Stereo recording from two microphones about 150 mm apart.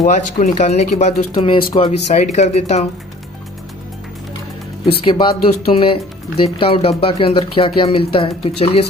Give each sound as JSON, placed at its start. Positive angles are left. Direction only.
{"t": 0.0, "sound": "speech", "side_deg": 50}
{"t": 5.0, "sound": "speech", "side_deg": 35}